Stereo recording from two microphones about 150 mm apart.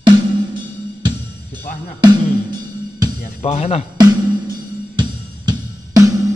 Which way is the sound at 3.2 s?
45° left (ahead or behind).